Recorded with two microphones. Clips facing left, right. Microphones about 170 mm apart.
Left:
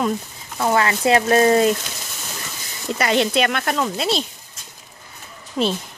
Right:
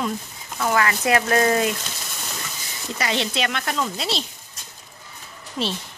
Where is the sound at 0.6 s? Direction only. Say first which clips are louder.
Left 3 dB; 30° left (ahead or behind).